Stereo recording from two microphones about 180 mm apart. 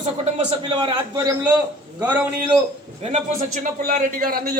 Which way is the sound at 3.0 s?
45° right (ahead or behind).